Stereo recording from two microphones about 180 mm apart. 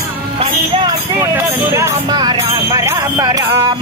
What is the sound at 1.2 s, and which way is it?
Jingle bell, 15° right (ahead or behind).